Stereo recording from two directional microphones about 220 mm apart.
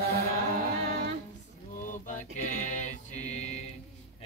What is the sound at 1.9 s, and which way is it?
Music, 35° left (ahead or behind).